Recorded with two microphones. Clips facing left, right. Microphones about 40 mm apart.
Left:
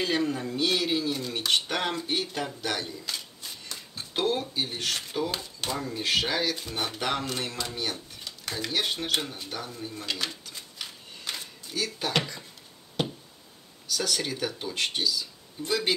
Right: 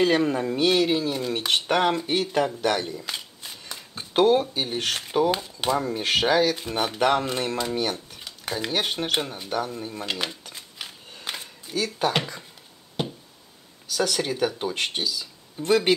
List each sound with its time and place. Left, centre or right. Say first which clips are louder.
0.0 s speech: right 6 dB; right; by 2.1 s centre
2.4 s shuffling cards: right 7 dB; centre
4.1 s speech: right 9 dB; right
7.9 s typewriter: right 4 dB; centre
8.5 s speech: right 3 dB; centre
13.9 s speech: right 5 dB; centre
14.6 s speech: right 2 dB; right
15.6 s a man's voice: right 8 dB; right